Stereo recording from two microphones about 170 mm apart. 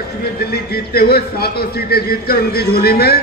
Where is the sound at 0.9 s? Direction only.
65° left (ahead or behind).